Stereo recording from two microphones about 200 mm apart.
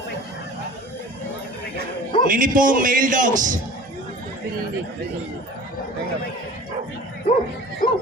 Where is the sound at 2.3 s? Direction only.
45° right (ahead or behind).